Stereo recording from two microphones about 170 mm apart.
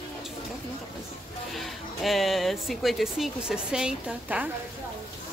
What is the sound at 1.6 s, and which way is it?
Speech, centre (ahead or behind).